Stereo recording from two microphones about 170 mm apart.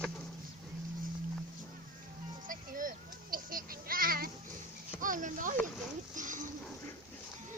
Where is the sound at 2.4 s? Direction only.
50° right (ahead or behind).